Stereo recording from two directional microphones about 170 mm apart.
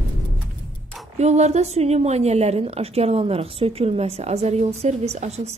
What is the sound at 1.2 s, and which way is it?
A woman's voice, 40° right (ahead or behind).